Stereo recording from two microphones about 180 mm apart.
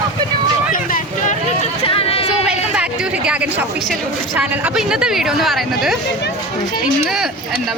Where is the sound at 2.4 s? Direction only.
5° right (ahead or behind).